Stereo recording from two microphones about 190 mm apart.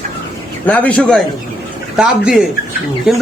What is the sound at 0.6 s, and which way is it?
A man's voice, 10° left (ahead or behind).